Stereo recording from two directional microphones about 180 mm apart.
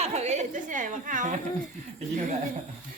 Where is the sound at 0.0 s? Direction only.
40° right (ahead or behind).